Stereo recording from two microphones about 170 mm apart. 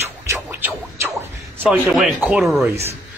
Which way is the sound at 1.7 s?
Centre (ahead or behind).